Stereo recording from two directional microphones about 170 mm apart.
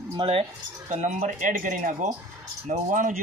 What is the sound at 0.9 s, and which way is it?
Speech, 40° right (ahead or behind).